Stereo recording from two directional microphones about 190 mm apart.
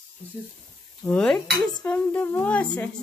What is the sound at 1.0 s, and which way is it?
Speech, 5° left (ahead or behind).